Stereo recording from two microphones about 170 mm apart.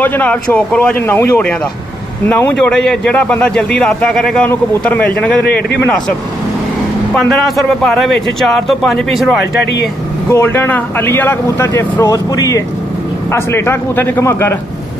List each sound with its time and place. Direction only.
0.0 s a man's voice: 10° left (ahead or behind)
5.4 s a man's voice: 75° left (ahead or behind)
7.2 s a man's voice: centre (ahead or behind)
10.3 s speech: 15° left (ahead or behind)